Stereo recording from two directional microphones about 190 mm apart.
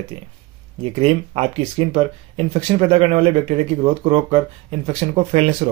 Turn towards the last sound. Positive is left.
turn(degrees=-35)  # may be behind; listen again after turning